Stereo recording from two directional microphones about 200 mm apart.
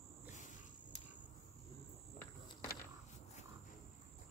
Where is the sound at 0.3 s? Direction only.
40° left (ahead or behind).